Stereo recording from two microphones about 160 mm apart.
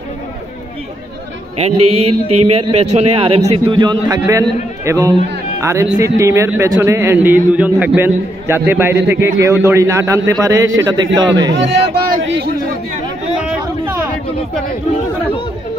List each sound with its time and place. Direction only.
1.6 s a man's voice: 40° right (ahead or behind)
11.5 s speech: 90° right